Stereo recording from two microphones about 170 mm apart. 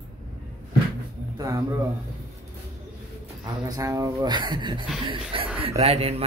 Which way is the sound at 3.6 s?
20° right (ahead or behind).